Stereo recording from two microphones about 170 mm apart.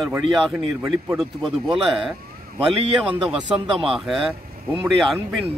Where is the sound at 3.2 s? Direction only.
Centre (ahead or behind).